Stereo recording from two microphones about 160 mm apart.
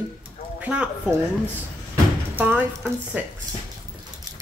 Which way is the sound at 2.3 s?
10° right (ahead or behind).